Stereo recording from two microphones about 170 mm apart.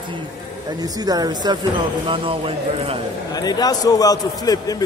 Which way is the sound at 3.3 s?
20° left (ahead or behind).